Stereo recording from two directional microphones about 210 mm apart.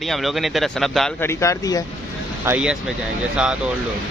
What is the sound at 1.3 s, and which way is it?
Speech, 15° left (ahead or behind).